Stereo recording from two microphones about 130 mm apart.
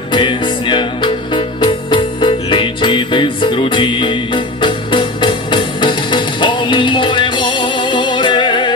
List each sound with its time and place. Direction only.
0.1 s music: 40° left (ahead or behind)